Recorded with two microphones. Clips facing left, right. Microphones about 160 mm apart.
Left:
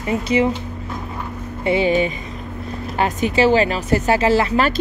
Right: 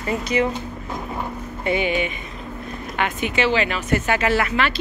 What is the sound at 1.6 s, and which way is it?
Speech, 35° left (ahead or behind).